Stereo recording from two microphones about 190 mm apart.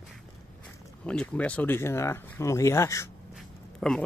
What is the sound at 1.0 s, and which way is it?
Speech, 5° left (ahead or behind).